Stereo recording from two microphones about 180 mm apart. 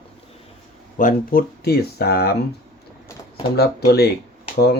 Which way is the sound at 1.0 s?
50° left (ahead or behind).